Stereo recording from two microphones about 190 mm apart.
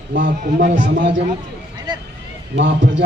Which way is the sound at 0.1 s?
50° right (ahead or behind).